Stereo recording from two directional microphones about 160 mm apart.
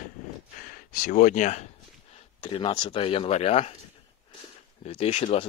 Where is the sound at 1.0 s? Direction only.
55° left (ahead or behind).